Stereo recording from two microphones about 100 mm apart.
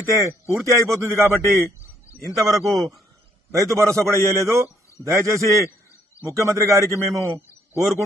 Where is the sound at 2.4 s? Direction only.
35° right (ahead or behind).